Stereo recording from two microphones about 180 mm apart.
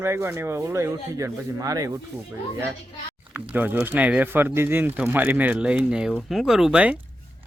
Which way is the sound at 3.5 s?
10° right (ahead or behind).